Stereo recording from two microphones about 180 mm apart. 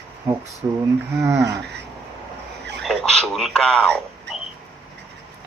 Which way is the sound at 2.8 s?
Centre (ahead or behind).